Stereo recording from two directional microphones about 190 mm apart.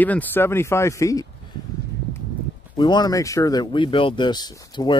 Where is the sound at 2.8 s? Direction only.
25° left (ahead or behind).